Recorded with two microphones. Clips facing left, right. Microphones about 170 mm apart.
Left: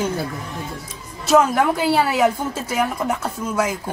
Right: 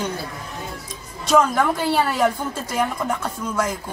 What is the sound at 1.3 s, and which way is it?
A woman's voice, 10° left (ahead or behind).